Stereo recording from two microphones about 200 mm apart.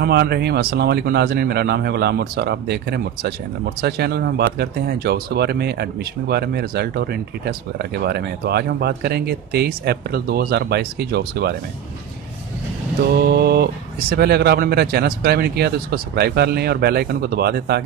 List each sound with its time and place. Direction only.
0.0 s speech: 55° right (ahead or behind)
13.2 s speech: 55° right (ahead or behind)